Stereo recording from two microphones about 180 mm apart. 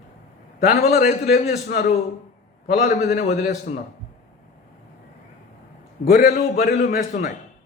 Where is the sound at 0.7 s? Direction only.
55° left (ahead or behind).